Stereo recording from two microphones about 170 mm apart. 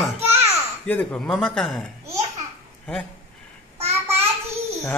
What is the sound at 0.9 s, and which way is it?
Speech, 10° left (ahead or behind).